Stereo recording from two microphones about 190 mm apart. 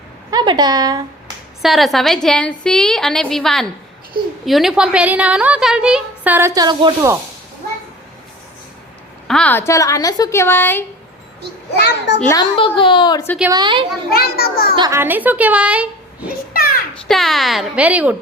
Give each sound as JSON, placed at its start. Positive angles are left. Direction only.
{"t": 0.3, "sound": "a woman's voice", "side_deg": -20}
{"t": 1.6, "sound": "a woman's voice", "side_deg": 0}
{"t": 9.2, "sound": "a woman's voice", "side_deg": 5}
{"t": 11.8, "sound": "a child's voice", "side_deg": 65}
{"t": 12.2, "sound": "a woman's voice", "side_deg": 15}
{"t": 12.5, "sound": "a child's voice", "side_deg": 25}
{"t": 13.5, "sound": "a woman's voice", "side_deg": -25}
{"t": 14.1, "sound": "a child's voice", "side_deg": 55}
{"t": 14.8, "sound": "a woman's voice", "side_deg": -15}
{"t": 16.5, "sound": "a sound", "side_deg": 50}
{"t": 16.9, "sound": "a woman's voice", "side_deg": 0}